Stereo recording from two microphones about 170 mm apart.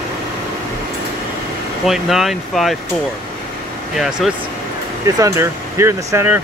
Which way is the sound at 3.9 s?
Centre (ahead or behind).